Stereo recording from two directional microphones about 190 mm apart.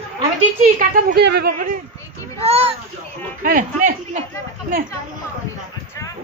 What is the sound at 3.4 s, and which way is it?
Speech, 45° right (ahead or behind).